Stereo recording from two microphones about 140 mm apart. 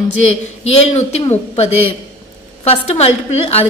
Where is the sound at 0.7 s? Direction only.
50° left (ahead or behind).